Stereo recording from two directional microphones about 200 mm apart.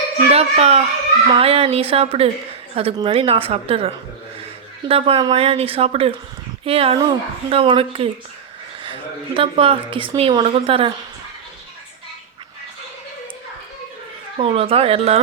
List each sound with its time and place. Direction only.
0.3 s a woman's voice: 30° right (ahead or behind)
14.3 s a woman's voice: 30° right (ahead or behind)